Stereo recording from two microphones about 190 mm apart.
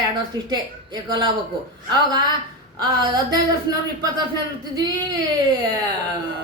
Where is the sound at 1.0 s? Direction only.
25° right (ahead or behind).